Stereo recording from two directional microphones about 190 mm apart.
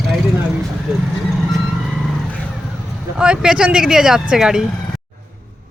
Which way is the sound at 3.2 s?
5° right (ahead or behind).